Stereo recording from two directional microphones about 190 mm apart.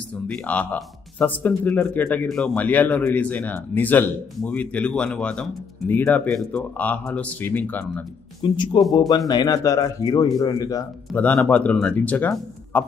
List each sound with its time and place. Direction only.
0.3 s speech: 5° left (ahead or behind)
8.4 s speech: 25° left (ahead or behind)
11.2 s speech: 5° left (ahead or behind)